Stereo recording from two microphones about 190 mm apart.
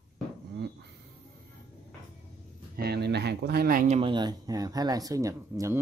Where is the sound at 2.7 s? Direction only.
55° right (ahead or behind); by 4.1 s 35° right (ahead or behind).